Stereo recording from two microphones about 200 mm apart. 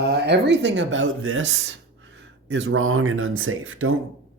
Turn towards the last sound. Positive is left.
turn(degrees=-85)